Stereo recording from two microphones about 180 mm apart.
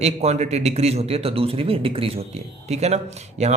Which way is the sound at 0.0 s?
35° right (ahead or behind).